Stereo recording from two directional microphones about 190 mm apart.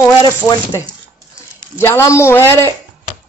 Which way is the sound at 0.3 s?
15° left (ahead or behind).